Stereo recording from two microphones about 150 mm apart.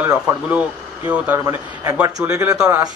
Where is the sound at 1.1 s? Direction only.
10° right (ahead or behind).